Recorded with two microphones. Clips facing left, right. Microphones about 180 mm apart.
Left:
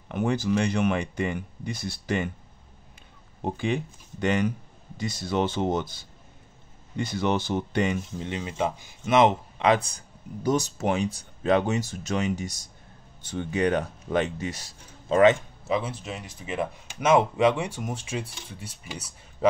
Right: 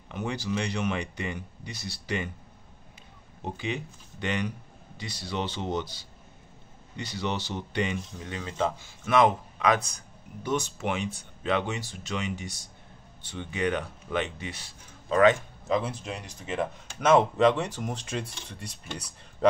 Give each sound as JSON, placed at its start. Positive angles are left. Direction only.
{"t": 0.1, "sound": "speech", "side_deg": 50}
{"t": 3.4, "sound": "speech", "side_deg": 50}
{"t": 8.2, "sound": "speech", "side_deg": 20}
{"t": 15.0, "sound": "a man's voice", "side_deg": 25}
{"t": 15.6, "sound": "speech", "side_deg": 5}